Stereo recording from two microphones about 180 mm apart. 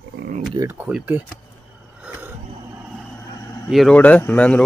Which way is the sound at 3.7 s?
5° left (ahead or behind).